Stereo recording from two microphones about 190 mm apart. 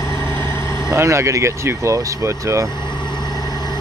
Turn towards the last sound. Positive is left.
turn(degrees=20)  # may be behind; listen again after turning